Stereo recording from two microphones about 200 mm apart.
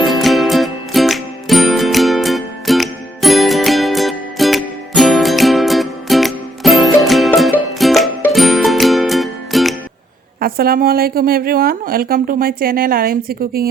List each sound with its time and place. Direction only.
0.0 s music: centre (ahead or behind)
10.4 s a woman's voice: 45° right (ahead or behind)